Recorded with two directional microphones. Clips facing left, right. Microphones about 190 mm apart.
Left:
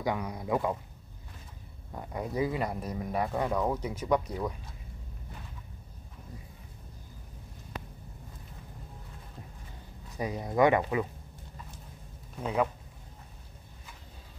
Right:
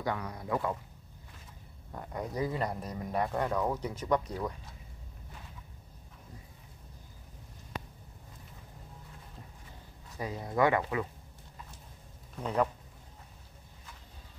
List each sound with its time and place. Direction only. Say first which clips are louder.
0.0 s speech: left 3 dB; 15° left (ahead or behind)
1.9 s speech: left 2 dB; 10° left (ahead or behind)
10.1 s speech: left 3 dB; 15° left (ahead or behind)
12.4 s speech: left 1 dB; 5° left (ahead or behind)